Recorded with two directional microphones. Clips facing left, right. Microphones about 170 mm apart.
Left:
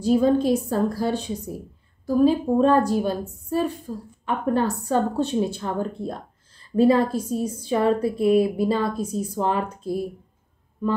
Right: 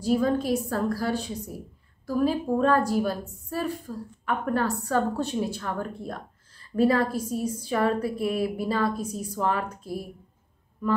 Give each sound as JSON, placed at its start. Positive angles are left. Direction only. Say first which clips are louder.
{"t": 0.0, "sound": "a woman's voice", "louder": "left 5 dB", "side_deg": 25}